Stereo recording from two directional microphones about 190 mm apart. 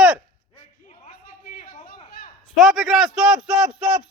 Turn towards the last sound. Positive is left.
turn(degrees=0)  # may be behind; listen again after turning